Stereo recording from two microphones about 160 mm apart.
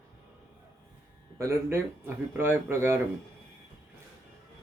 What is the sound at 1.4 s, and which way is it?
Speech, 15° right (ahead or behind).